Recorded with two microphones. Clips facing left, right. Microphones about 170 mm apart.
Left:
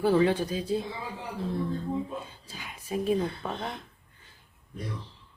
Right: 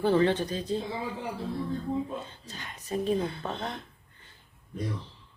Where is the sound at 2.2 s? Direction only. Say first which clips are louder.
Right 1 dB; 10° left (ahead or behind).